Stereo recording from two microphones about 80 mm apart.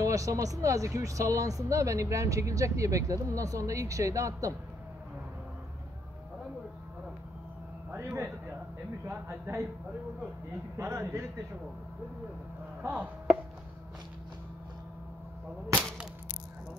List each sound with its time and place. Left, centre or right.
0.0 s speech: right
8.0 s a sound: right
9.5 s speech: right
10.8 s speech: right
12.8 s speech: right